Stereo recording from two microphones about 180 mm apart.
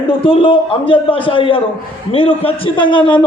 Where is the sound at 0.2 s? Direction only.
30° left (ahead or behind).